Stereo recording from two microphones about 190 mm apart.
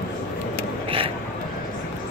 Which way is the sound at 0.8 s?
30° right (ahead or behind).